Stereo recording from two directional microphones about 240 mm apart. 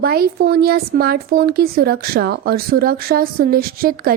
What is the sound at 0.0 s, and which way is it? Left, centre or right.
Speech, right.